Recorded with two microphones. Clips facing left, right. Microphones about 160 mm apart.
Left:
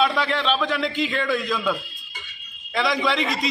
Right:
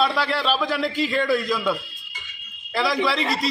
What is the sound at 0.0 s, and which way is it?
A man's voice, 5° right (ahead or behind).